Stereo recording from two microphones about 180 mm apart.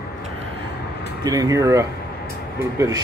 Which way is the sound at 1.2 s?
20° right (ahead or behind).